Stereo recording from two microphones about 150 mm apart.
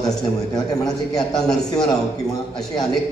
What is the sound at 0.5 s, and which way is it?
Speech, 25° left (ahead or behind).